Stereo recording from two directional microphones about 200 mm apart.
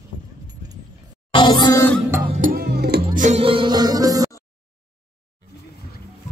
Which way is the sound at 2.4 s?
50° right (ahead or behind).